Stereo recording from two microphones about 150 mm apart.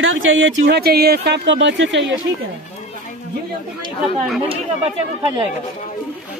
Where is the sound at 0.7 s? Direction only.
90° right.